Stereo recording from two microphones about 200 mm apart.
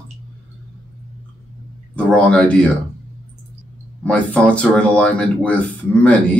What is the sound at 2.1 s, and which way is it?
Speech, 5° left (ahead or behind).